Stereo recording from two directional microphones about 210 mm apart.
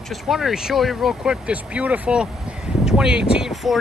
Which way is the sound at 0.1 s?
Centre (ahead or behind).